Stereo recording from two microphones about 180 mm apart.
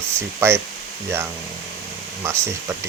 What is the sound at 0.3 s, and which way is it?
Speech, 15° right (ahead or behind).